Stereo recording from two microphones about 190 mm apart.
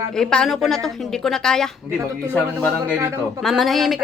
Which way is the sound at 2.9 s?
15° right (ahead or behind).